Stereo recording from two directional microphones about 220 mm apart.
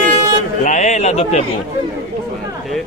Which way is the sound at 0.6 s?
30° left (ahead or behind).